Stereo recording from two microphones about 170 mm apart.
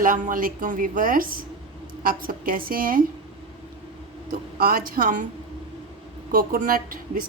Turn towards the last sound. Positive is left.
turn(degrees=-60)  # may be behind; listen again after turning